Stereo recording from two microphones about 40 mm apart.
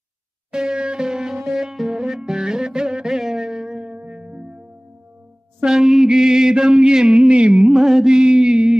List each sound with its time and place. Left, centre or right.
0.5 s music: right
3.9 s music: right
5.7 s a sound: centre; by 7.6 s right
7.6 s music: centre